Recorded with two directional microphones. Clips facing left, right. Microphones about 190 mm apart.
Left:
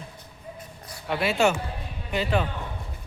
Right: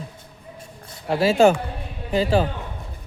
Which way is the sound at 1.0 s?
35° right (ahead or behind).